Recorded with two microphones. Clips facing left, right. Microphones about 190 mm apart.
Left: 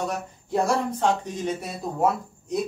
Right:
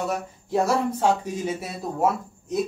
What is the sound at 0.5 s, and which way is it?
Speech, 5° right (ahead or behind).